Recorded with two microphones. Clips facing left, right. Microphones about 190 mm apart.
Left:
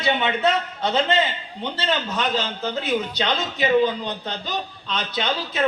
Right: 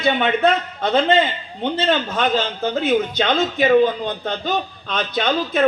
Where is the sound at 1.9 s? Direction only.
50° right (ahead or behind).